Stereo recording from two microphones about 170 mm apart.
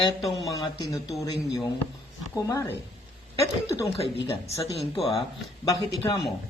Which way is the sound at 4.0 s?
35° left (ahead or behind).